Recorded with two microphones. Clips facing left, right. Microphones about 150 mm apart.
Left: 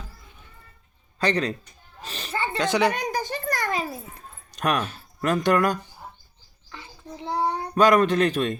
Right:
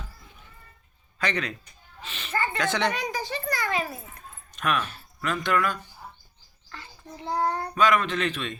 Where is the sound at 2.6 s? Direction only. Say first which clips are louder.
Left 6 dB; 10° left (ahead or behind).